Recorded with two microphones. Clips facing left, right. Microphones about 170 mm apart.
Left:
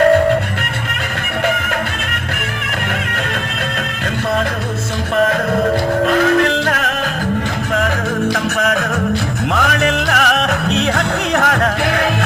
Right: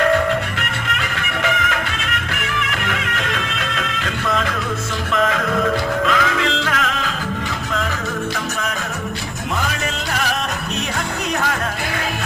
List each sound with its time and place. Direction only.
0.0 s music: 45° left (ahead or behind)
6.1 s music: 50° left (ahead or behind)
8.5 s music: 60° left (ahead or behind)